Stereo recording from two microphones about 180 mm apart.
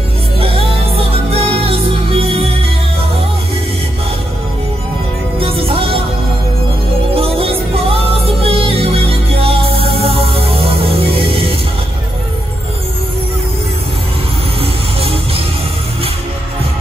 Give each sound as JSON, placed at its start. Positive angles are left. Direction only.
{"t": 0.4, "sound": "music", "side_deg": -30}
{"t": 5.4, "sound": "music", "side_deg": -30}
{"t": 7.2, "sound": "music", "side_deg": -30}
{"t": 14.6, "sound": "music", "side_deg": -30}